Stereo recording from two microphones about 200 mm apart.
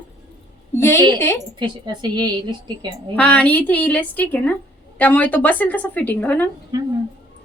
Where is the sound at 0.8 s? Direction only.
15° left (ahead or behind).